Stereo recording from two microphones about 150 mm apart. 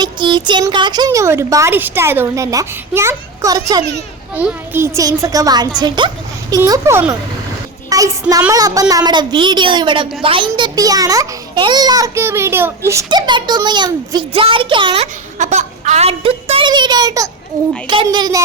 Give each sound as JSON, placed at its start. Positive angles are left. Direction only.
{"t": 0.0, "sound": "speech", "side_deg": -30}
{"t": 4.4, "sound": "speech", "side_deg": -10}
{"t": 13.1, "sound": "a woman's voice", "side_deg": -30}
{"t": 15.0, "sound": "a woman's voice", "side_deg": -50}